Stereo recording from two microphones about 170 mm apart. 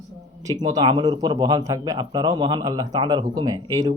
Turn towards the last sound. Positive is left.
turn(degrees=-20)  # may be behind; listen again after turning